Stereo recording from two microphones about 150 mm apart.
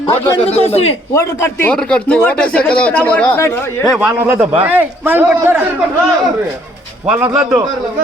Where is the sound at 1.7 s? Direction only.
5° left (ahead or behind).